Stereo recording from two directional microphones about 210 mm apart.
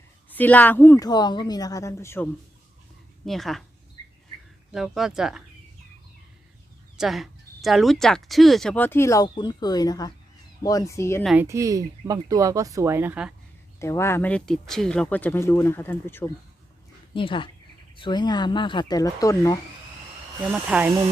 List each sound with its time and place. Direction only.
0.3 s speech: 10° left (ahead or behind)
3.2 s speech: centre (ahead or behind)
4.7 s speech: centre (ahead or behind)
6.9 s speech: centre (ahead or behind)
11.2 s speech: centre (ahead or behind)
11.4 s speech: 15° right (ahead or behind)
13.7 s speech: 15° left (ahead or behind)
17.2 s speech: 25° left (ahead or behind)
20.4 s speech: 5° right (ahead or behind)